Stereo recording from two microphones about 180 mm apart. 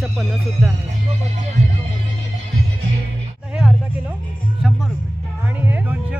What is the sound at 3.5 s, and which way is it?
Music, 5° right (ahead or behind).